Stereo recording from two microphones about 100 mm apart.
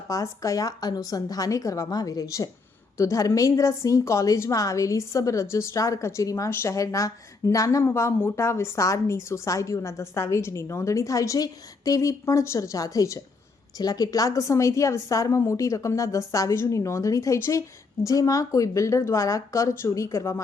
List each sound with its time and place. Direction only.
0.1 s a woman's voice: 30° left (ahead or behind)